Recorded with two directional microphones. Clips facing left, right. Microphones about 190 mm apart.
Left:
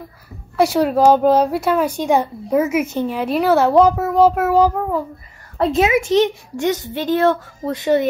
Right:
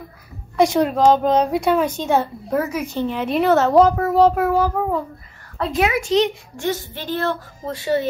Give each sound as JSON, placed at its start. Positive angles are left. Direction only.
{"t": 0.6, "sound": "a woman's voice", "side_deg": 5}
{"t": 3.1, "sound": "a woman's voice", "side_deg": 5}
{"t": 5.6, "sound": "a woman's voice", "side_deg": 25}